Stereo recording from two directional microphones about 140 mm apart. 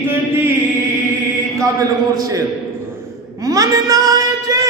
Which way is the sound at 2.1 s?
25° right (ahead or behind).